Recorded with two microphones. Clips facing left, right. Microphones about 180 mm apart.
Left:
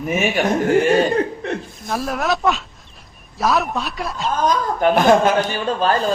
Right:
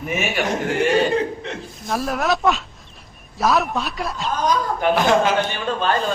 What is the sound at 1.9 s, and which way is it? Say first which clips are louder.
A man's voice: even; centre (ahead or behind).